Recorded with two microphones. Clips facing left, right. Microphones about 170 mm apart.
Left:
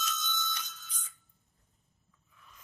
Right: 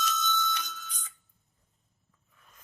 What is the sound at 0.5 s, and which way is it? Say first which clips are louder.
Ringtone: right 7 dB; 70° right (ahead or behind).